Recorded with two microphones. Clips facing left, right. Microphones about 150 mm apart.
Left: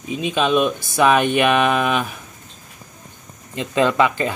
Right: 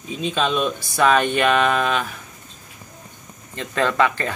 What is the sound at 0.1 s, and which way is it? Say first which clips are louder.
Speech: left 4 dB; 15° left (ahead or behind).